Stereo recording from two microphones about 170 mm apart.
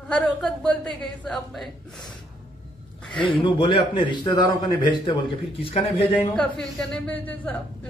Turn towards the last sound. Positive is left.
turn(degrees=10)  # may be behind; listen again after turning